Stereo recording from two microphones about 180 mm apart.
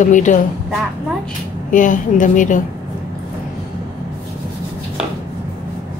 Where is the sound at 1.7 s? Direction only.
45° left (ahead or behind).